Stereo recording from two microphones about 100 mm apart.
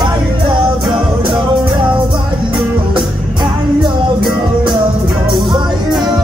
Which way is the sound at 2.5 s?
50° right (ahead or behind).